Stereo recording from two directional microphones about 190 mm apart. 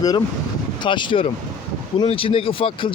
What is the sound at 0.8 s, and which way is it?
Speech, 25° left (ahead or behind).